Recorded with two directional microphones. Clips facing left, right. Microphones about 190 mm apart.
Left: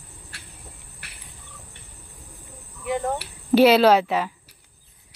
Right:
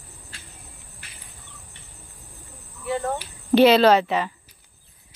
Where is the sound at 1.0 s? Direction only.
70° left (ahead or behind).